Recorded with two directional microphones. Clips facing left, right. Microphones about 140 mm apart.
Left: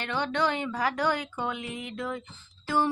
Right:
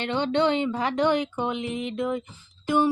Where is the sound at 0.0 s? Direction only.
25° right (ahead or behind).